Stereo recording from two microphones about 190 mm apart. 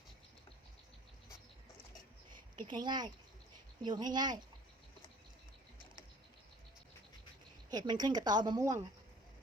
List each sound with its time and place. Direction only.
2.3 s a woman's voice: 25° right (ahead or behind)
7.7 s a woman's voice: 20° right (ahead or behind)